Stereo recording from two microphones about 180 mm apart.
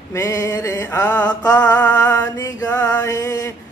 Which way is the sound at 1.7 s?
10° left (ahead or behind).